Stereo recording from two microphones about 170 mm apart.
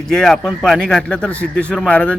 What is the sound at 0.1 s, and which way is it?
Speech, 5° left (ahead or behind).